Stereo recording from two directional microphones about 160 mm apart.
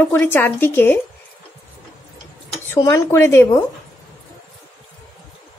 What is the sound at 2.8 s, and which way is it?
Speech, 20° left (ahead or behind).